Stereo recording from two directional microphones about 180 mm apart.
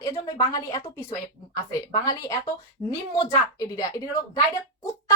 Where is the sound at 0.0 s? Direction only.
20° left (ahead or behind).